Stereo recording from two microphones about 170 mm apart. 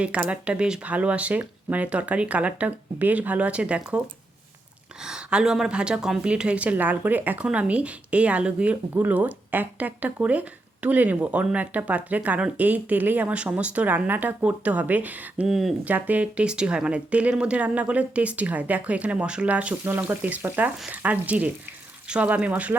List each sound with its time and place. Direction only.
0.0 s speech: 5° right (ahead or behind)
5.0 s speech: 5° right (ahead or behind)